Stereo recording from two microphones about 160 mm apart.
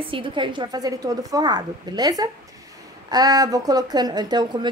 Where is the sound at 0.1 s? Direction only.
30° right (ahead or behind).